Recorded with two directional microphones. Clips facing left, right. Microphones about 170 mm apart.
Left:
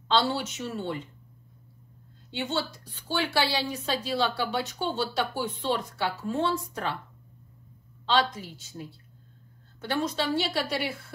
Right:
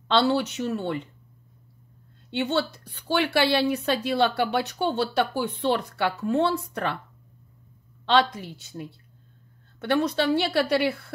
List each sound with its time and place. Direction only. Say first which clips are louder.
0.1 s speech: right 4 dB; 65° right (ahead or behind)
2.3 s speech: right 5 dB; 60° right (ahead or behind)
8.0 s speech: right 4 dB; 60° right (ahead or behind)